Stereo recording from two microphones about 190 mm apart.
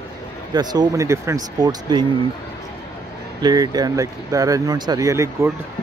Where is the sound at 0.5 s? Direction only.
20° right (ahead or behind).